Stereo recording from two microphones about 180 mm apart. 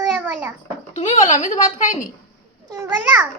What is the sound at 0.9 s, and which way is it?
A child's voice, 40° left (ahead or behind).